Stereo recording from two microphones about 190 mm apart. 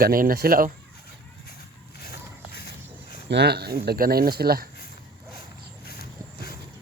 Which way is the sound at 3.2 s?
60° right (ahead or behind).